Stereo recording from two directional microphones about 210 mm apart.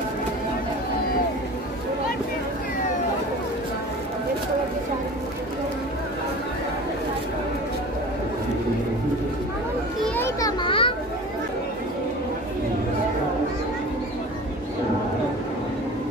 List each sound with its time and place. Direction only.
10.0 s children playing: 10° left (ahead or behind)
10.6 s children playing: 25° left (ahead or behind)